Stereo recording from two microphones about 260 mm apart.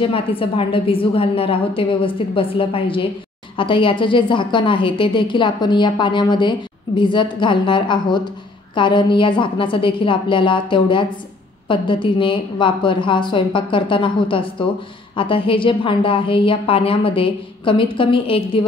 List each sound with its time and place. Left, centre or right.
0.0 s a woman's voice: left